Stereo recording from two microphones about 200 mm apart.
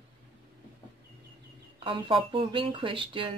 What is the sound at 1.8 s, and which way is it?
Speech, 25° right (ahead or behind).